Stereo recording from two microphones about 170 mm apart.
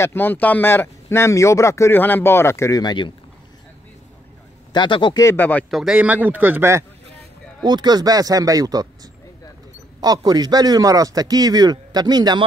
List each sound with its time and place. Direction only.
0.0 s speech: 10° left (ahead or behind)
4.7 s speech: 30° left (ahead or behind)
5.2 s speech: 15° left (ahead or behind); by 6.8 s 10° right (ahead or behind)
7.6 s a man's voice: 25° right (ahead or behind)